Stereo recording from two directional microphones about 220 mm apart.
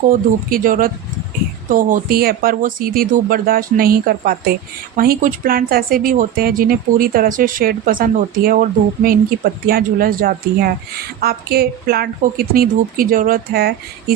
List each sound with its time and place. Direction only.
0.1 s speech: 40° right (ahead or behind)